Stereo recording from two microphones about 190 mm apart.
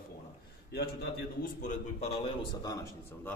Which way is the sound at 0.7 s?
55° left (ahead or behind).